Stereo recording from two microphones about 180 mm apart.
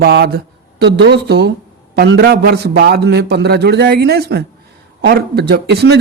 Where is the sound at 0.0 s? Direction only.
60° right (ahead or behind).